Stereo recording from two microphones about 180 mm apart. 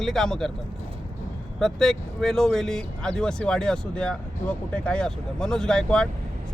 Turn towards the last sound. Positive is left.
turn(degrees=5)  # may be behind; listen again after turning